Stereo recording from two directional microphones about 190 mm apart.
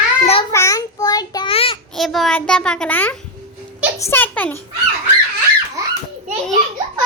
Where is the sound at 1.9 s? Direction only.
Centre (ahead or behind).